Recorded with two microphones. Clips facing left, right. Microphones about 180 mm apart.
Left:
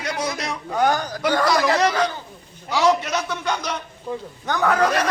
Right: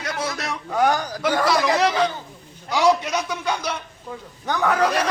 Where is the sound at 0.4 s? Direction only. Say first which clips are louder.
Right 2 dB; centre (ahead or behind).